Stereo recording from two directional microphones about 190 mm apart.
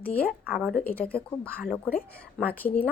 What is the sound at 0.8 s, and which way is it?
A woman's voice, 10° left (ahead or behind).